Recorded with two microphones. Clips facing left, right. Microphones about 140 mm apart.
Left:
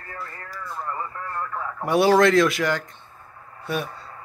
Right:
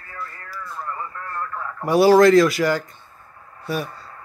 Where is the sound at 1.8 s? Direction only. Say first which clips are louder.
Right 4 dB; centre (ahead or behind).